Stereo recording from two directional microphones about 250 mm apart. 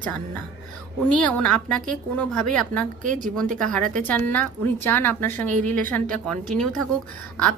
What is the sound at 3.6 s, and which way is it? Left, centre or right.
A woman's voice, centre.